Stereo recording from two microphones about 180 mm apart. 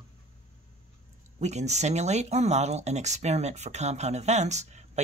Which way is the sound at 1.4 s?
40° right (ahead or behind).